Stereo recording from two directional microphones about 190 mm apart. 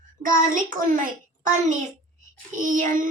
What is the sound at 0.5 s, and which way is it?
A child's voice, 45° right (ahead or behind).